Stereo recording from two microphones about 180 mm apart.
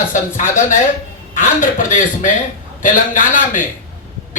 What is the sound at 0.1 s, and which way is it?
Speech, 45° left (ahead or behind).